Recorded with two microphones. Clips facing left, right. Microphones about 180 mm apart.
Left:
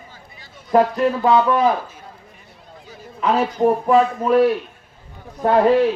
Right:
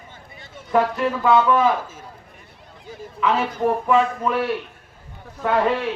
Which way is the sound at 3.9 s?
35° left (ahead or behind).